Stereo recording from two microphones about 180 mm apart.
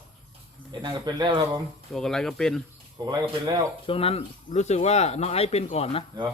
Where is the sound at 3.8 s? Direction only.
30° left (ahead or behind).